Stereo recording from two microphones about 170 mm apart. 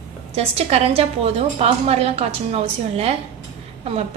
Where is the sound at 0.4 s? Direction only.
35° right (ahead or behind).